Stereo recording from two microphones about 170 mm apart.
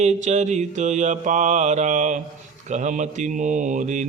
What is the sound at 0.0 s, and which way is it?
Mantra, 45° right (ahead or behind).